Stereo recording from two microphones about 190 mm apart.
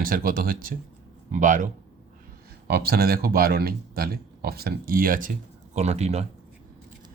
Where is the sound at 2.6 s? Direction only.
55° right (ahead or behind); by 6.2 s 35° right (ahead or behind).